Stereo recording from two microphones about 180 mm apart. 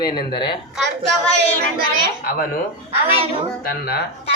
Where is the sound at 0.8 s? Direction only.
5° left (ahead or behind).